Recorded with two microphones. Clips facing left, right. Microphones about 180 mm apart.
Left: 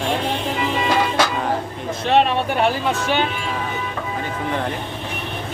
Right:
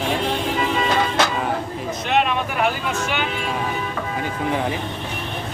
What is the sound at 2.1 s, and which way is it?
Speech, 35° left (ahead or behind).